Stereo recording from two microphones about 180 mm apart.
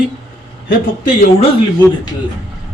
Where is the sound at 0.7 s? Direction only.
55° left (ahead or behind).